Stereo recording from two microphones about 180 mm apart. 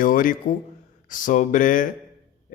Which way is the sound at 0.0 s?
50° left (ahead or behind).